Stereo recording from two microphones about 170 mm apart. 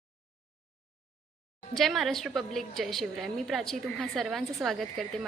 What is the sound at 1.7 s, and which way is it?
A woman's voice, centre (ahead or behind).